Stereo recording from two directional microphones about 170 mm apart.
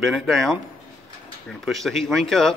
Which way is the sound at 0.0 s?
Centre (ahead or behind).